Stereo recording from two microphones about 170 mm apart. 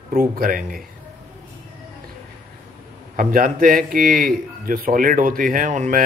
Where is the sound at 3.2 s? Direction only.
55° right (ahead or behind).